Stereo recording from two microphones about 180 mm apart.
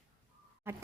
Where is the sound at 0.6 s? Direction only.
15° right (ahead or behind).